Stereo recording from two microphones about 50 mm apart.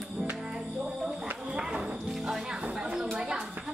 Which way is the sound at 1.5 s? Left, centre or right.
Centre.